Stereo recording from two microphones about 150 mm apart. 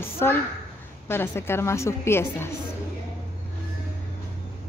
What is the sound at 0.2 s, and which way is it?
A woman's voice, 15° left (ahead or behind).